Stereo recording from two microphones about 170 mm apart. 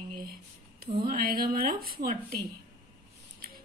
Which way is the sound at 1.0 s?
60° right (ahead or behind).